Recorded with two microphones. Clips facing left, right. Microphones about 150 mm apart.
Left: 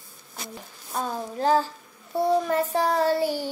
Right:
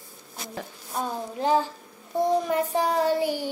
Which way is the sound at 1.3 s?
15° right (ahead or behind).